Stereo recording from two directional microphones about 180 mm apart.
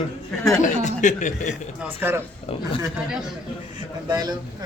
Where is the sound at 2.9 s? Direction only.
5° right (ahead or behind).